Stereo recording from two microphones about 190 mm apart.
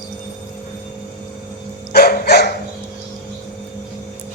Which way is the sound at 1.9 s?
55° left (ahead or behind).